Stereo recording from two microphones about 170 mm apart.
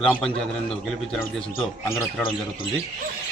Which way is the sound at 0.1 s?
5° left (ahead or behind).